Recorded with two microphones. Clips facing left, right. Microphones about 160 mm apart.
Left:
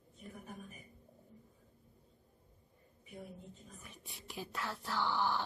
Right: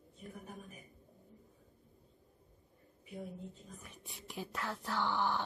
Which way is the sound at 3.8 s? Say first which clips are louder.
Right 1 dB; centre (ahead or behind).